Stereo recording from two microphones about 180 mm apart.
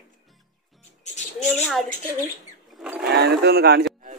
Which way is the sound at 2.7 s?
5° right (ahead or behind).